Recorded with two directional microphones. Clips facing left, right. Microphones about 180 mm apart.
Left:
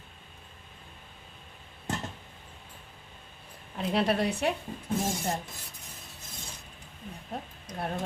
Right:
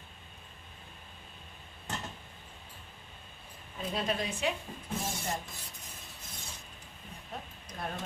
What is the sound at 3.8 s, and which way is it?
Speech, 70° left (ahead or behind).